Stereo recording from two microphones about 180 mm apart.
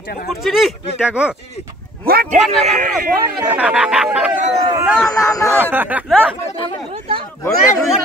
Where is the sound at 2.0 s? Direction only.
55° right (ahead or behind).